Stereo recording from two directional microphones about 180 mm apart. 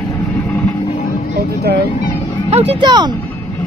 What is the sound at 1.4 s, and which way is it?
Speech, 70° right (ahead or behind).